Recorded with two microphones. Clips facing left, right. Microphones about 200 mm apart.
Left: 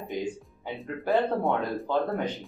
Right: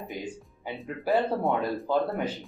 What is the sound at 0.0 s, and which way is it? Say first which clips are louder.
Speech: left 4 dB; centre (ahead or behind).